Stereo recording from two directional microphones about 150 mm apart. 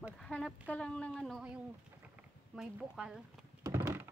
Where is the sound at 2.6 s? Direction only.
5° right (ahead or behind).